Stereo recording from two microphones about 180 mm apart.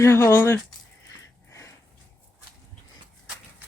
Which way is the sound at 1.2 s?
15° left (ahead or behind).